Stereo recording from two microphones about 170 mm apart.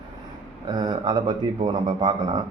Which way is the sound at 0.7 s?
25° right (ahead or behind).